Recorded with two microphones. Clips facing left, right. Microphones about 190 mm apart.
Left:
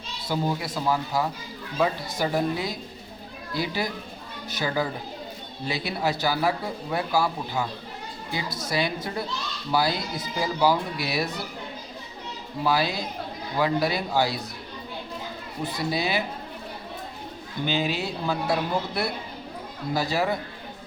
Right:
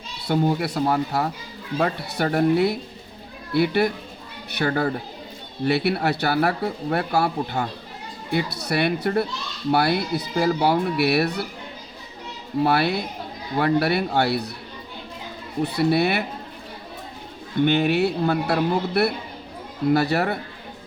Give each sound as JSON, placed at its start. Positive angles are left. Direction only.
{"t": 0.3, "sound": "speech", "side_deg": -65}
{"t": 12.6, "sound": "speech", "side_deg": -65}
{"t": 15.6, "sound": "speech", "side_deg": -65}
{"t": 17.7, "sound": "speech", "side_deg": -60}